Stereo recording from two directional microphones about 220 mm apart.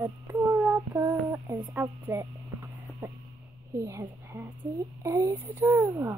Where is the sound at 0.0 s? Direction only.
15° right (ahead or behind).